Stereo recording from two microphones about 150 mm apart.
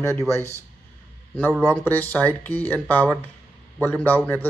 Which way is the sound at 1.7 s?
10° left (ahead or behind).